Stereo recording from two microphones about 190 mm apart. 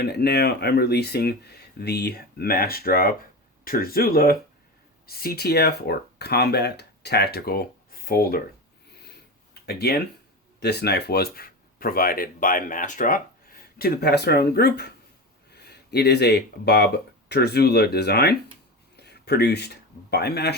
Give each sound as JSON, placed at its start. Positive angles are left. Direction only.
{"t": 0.0, "sound": "speech", "side_deg": 55}
{"t": 9.6, "sound": "speech", "side_deg": 55}